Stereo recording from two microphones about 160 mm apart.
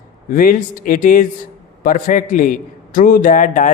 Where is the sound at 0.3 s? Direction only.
60° left (ahead or behind).